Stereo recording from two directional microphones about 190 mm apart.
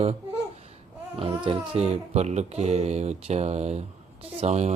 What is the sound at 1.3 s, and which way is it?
Speech, 25° right (ahead or behind).